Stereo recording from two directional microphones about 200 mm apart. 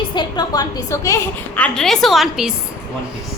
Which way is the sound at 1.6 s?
5° left (ahead or behind).